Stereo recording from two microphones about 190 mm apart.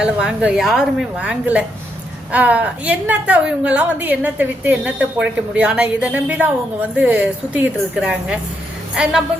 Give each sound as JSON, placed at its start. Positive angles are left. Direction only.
{"t": 0.0, "sound": "a woman's voice", "side_deg": -5}